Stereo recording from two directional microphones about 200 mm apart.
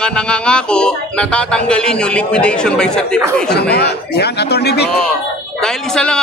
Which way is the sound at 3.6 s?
55° left (ahead or behind).